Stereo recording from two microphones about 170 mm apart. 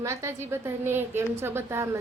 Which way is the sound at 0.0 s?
15° right (ahead or behind).